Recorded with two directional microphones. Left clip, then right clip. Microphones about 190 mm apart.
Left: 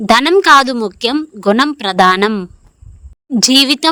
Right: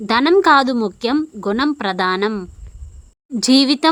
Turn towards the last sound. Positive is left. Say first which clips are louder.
# left 4 dB
turn(degrees=40)  # may be behind; listen again after turning